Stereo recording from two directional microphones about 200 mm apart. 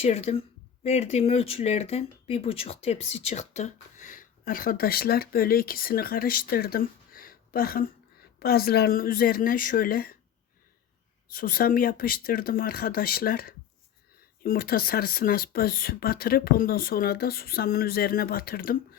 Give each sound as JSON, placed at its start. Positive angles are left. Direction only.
{"t": 0.0, "sound": "a woman's voice", "side_deg": 30}
{"t": 11.3, "sound": "speech", "side_deg": 45}